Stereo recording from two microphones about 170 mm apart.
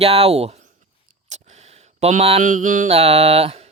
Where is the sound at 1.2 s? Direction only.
45° right (ahead or behind).